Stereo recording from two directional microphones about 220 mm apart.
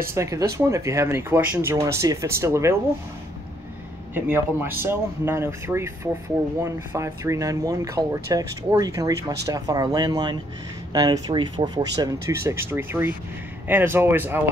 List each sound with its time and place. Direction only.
0.1 s speech: 15° right (ahead or behind)
4.1 s speech: 10° right (ahead or behind)